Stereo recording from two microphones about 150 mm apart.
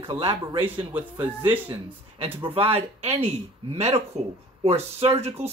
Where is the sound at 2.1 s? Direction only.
40° right (ahead or behind).